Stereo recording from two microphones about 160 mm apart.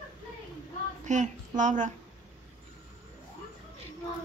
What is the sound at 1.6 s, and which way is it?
Speech, 50° right (ahead or behind).